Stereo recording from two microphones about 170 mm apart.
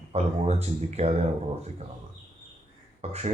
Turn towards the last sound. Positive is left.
turn(degrees=-40)  # may be behind; listen again after turning